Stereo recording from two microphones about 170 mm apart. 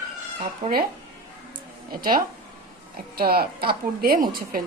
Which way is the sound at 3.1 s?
65° right (ahead or behind).